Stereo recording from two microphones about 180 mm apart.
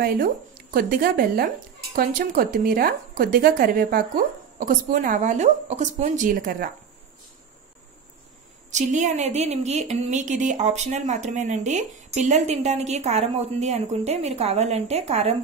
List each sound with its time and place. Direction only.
0.7 s speech: 50° right (ahead or behind)
8.7 s speech: 40° right (ahead or behind)